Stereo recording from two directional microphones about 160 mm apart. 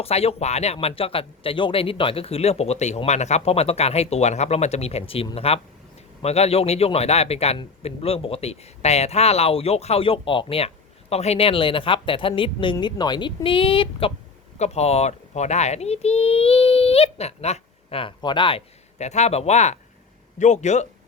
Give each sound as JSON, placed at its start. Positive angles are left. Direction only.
{"t": 0.0, "sound": "a man's voice", "side_deg": 40}